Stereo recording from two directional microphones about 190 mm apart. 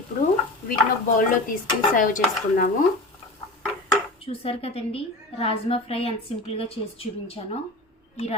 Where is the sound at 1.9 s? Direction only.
45° left (ahead or behind).